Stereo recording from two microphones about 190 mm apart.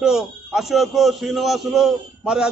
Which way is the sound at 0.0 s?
5° right (ahead or behind).